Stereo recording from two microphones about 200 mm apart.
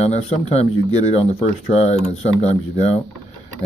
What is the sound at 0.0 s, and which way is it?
Speech, 30° left (ahead or behind).